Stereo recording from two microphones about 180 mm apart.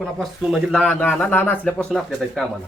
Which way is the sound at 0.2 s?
Centre (ahead or behind).